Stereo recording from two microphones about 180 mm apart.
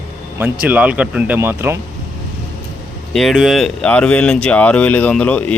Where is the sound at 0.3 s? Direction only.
10° right (ahead or behind).